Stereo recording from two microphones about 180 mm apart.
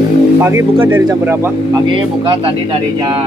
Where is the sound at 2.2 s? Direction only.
25° right (ahead or behind).